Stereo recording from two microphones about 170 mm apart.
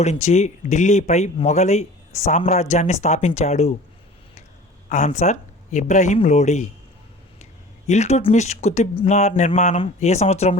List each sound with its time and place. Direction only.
0.0 s speech: 40° left (ahead or behind)
4.9 s speech: 45° left (ahead or behind)
7.9 s speech: 40° left (ahead or behind)